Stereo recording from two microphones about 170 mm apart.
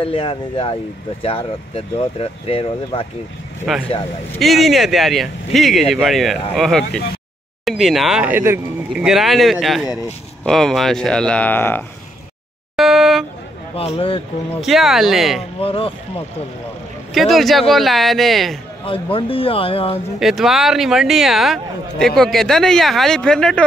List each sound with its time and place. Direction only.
0.0 s speech: 35° left (ahead or behind)
3.7 s a man's voice: centre (ahead or behind)
9.0 s a man's voice: centre (ahead or behind)
12.7 s a sound: centre (ahead or behind)
13.7 s speech: 35° left (ahead or behind)
14.6 s a man's voice: centre (ahead or behind)
15.6 s speech: 35° left (ahead or behind)
17.1 s a man's voice: centre (ahead or behind)
19.1 s speech: 30° left (ahead or behind)
20.2 s a man's voice: centre (ahead or behind)